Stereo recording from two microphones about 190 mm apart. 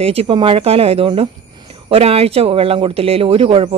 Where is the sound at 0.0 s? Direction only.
30° right (ahead or behind).